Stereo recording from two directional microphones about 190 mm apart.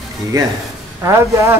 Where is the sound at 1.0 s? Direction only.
15° right (ahead or behind).